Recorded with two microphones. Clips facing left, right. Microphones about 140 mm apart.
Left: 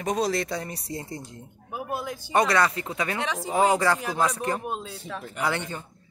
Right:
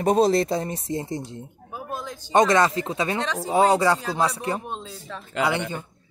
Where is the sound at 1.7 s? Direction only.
10° left (ahead or behind).